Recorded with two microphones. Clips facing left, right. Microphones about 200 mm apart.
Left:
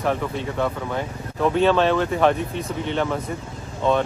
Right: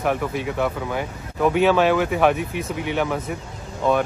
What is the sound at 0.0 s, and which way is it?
Speech, 10° right (ahead or behind).